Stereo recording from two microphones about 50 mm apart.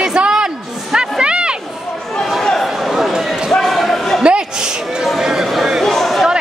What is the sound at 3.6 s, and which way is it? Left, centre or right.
Basketball bounce, centre.